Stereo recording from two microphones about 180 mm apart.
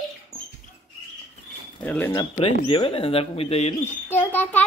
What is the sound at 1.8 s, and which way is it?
Bird, 10° left (ahead or behind).